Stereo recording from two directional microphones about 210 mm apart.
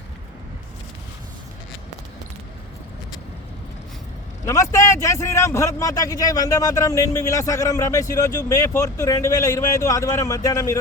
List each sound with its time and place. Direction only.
4.4 s a man's voice: 15° left (ahead or behind)